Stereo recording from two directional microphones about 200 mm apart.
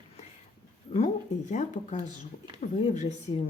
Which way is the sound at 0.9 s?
35° left (ahead or behind).